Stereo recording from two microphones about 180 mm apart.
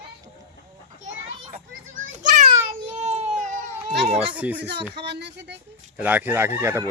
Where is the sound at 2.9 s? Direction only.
35° right (ahead or behind).